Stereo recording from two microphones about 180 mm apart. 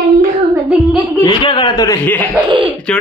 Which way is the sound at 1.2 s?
25° left (ahead or behind).